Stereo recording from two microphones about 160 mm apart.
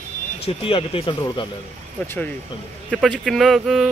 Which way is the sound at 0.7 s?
35° left (ahead or behind).